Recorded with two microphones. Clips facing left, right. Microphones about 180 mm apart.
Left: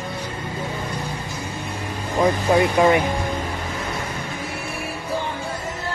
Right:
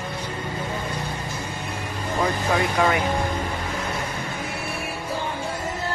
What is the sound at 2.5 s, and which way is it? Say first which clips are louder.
Speech: left 6 dB; 25° left (ahead or behind).